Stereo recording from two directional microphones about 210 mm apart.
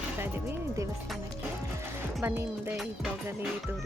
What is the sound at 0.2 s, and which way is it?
Music, 10° right (ahead or behind).